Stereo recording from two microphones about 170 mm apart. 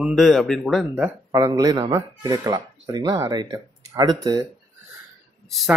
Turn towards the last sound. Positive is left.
turn(degrees=0)  # may be behind; listen again after turning